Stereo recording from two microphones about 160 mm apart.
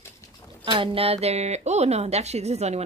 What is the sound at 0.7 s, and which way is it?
A woman's voice, 35° right (ahead or behind).